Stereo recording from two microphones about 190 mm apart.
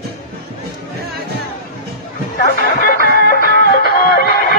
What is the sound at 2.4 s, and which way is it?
Music, 50° left (ahead or behind).